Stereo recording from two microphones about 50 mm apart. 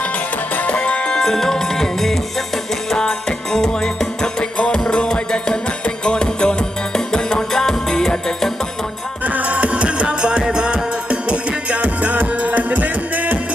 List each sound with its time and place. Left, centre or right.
0.5 s music: left; by 8.5 s centre
9.2 s music: right